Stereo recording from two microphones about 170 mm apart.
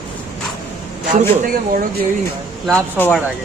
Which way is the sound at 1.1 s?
55° right (ahead or behind).